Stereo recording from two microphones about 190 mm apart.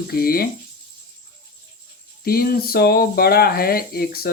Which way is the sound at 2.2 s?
50° left (ahead or behind).